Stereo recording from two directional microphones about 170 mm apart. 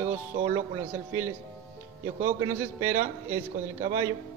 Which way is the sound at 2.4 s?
15° right (ahead or behind).